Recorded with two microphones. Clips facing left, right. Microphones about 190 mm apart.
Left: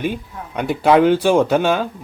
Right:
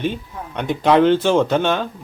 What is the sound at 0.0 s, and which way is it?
Speech, 10° left (ahead or behind).